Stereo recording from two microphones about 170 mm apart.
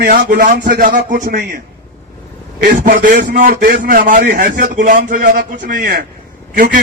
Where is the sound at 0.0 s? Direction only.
65° right (ahead or behind).